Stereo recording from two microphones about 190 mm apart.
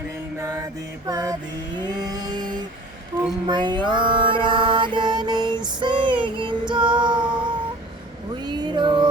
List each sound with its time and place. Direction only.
0.3 s mantra: 15° right (ahead or behind)
1.8 s vehicle: 20° right (ahead or behind)
3.4 s music: 25° right (ahead or behind)
3.8 s mantra: 25° right (ahead or behind)
6.2 s a sound: 25° right (ahead or behind)
6.8 s music: 5° right (ahead or behind)
7.1 s a sound: 25° right (ahead or behind)